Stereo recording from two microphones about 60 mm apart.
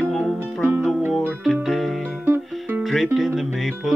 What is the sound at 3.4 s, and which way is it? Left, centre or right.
Music, centre.